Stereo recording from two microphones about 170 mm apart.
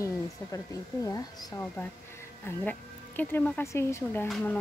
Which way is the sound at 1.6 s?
10° left (ahead or behind).